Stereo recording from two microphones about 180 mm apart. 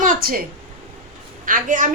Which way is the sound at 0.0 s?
50° right (ahead or behind).